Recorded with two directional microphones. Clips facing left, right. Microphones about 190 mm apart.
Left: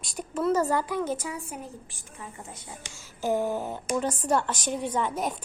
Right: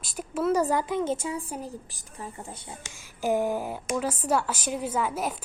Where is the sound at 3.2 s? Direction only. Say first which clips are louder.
Right 1 dB; 15° right (ahead or behind).